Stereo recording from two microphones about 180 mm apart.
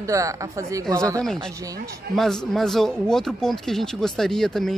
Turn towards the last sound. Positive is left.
turn(degrees=0)  # may be behind; listen again after turning